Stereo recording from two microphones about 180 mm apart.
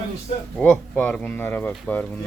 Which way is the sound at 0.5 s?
10° left (ahead or behind).